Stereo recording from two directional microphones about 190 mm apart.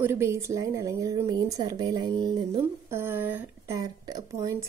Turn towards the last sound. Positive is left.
turn(degrees=-15)  # may be behind; listen again after turning